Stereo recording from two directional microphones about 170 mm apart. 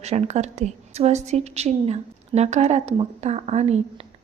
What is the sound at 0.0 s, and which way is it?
A woman's voice, 40° right (ahead or behind).